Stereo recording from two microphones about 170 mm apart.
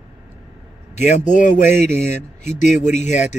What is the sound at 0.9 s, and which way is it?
Speech, 45° left (ahead or behind).